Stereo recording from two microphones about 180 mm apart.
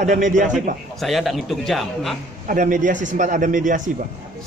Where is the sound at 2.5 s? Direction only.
45° right (ahead or behind).